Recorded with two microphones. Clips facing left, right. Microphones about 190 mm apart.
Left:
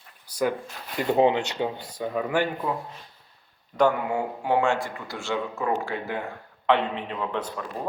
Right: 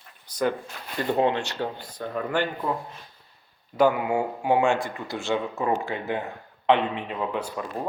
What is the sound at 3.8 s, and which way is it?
A man's voice, 10° right (ahead or behind).